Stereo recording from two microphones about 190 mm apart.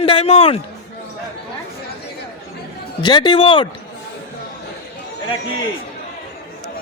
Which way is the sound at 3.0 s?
25° left (ahead or behind).